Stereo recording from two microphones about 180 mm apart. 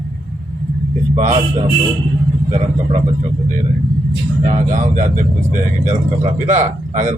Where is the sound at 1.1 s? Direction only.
45° right (ahead or behind).